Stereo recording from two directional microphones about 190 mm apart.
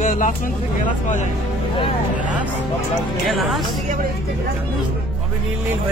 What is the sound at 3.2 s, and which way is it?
Speech, centre (ahead or behind).